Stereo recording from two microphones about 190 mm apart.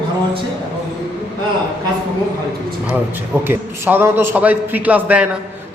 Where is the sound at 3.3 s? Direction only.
10° right (ahead or behind).